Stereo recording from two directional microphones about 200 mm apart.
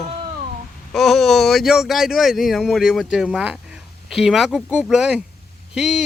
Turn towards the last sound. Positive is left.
turn(degrees=0)  # may be behind; listen again after turning